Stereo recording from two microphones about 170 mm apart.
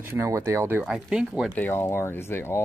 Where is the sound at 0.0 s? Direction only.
15° right (ahead or behind).